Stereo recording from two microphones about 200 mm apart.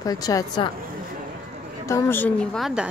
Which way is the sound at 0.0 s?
20° left (ahead or behind).